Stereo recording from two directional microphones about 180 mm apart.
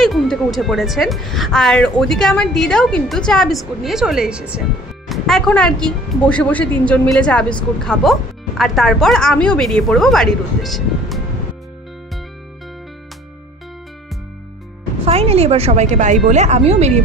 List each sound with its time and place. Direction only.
0.0 s a woman's voice: centre (ahead or behind)
15.0 s a woman's voice: 35° right (ahead or behind)